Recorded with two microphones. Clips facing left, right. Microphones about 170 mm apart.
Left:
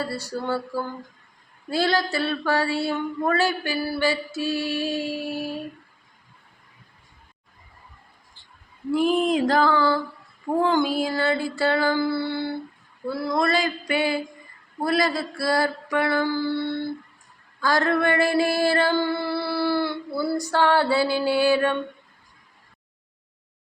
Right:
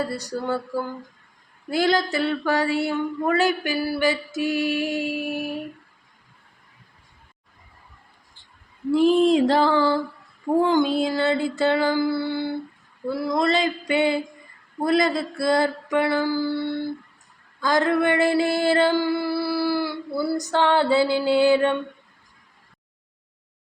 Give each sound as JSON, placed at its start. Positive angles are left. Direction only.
{"t": 0.0, "sound": "mantra", "side_deg": -20}
{"t": 1.7, "sound": "mantra", "side_deg": -20}
{"t": 8.9, "sound": "mantra", "side_deg": -25}
{"t": 17.6, "sound": "a sound", "side_deg": -20}